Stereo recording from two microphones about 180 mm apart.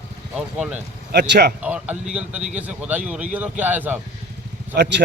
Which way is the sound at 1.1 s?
65° right (ahead or behind).